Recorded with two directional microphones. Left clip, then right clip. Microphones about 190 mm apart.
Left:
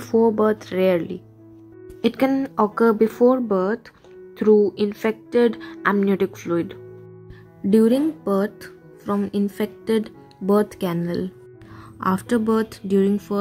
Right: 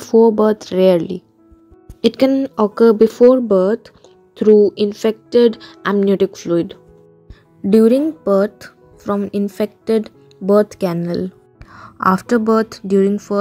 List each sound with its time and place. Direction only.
0.0 s speech: 25° right (ahead or behind)